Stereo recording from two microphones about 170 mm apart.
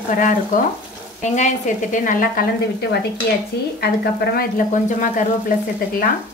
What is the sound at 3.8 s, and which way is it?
Speech, 65° left (ahead or behind).